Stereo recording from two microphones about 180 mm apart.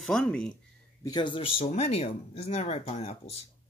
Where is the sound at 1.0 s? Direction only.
25° left (ahead or behind).